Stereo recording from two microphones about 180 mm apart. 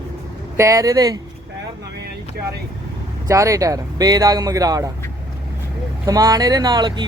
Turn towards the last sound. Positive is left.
turn(degrees=-25)  # may be behind; listen again after turning